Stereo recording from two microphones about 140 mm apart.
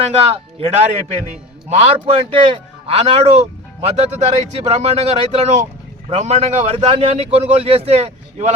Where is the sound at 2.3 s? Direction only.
40° right (ahead or behind).